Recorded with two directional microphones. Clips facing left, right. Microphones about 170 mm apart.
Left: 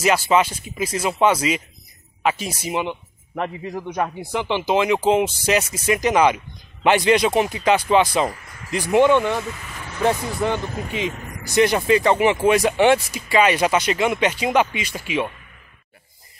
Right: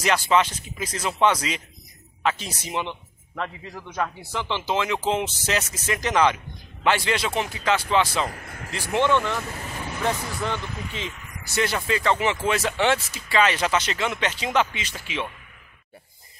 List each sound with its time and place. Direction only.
0.0 s speech: 10° left (ahead or behind)
8.3 s speech: 55° right (ahead or behind)
8.7 s speech: 15° left (ahead or behind)
9.5 s speech: 35° right (ahead or behind)
10.0 s speech: 15° left (ahead or behind)
10.6 s speech: 45° left (ahead or behind)
11.1 s vehicle: 45° left (ahead or behind)
11.4 s speech: 15° left (ahead or behind)